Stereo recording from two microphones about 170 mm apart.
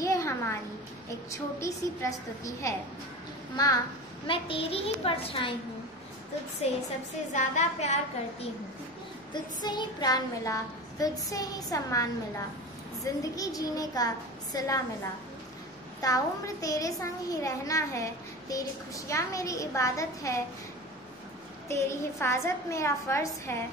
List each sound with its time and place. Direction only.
0.0 s a sound: 20° left (ahead or behind)
1.3 s a woman's voice: 20° left (ahead or behind)
4.3 s a woman's voice: 30° left (ahead or behind)
7.3 s a woman's voice: 45° left (ahead or behind)
9.3 s a woman's voice: 25° left (ahead or behind)
16.0 s a woman's voice: 20° left (ahead or behind)
21.6 s a woman's voice: 15° left (ahead or behind)